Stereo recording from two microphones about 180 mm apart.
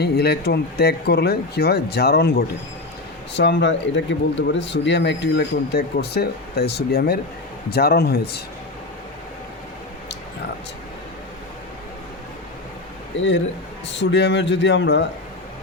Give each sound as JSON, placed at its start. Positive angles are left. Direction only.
{"t": 0.0, "sound": "speech", "side_deg": 65}
{"t": 3.3, "sound": "speech", "side_deg": 75}
{"t": 13.8, "sound": "a man's voice", "side_deg": 80}